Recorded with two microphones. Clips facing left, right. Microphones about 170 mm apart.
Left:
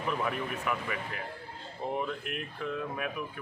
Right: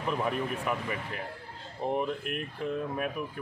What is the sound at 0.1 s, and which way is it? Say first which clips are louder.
Speech: right 3 dB; 30° right (ahead or behind).